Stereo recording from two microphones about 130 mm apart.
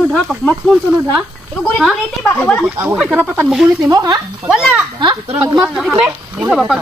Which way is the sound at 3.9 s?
30° right (ahead or behind).